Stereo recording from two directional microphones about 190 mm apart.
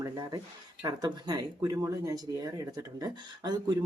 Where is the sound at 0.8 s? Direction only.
20° right (ahead or behind).